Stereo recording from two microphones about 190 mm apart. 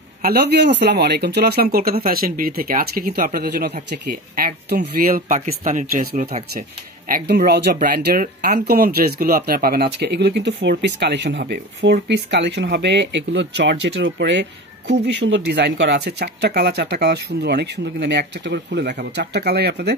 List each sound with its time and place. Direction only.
0.2 s speech: 55° right (ahead or behind)